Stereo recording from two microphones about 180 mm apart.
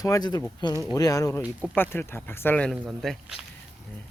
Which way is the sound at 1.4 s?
10° right (ahead or behind).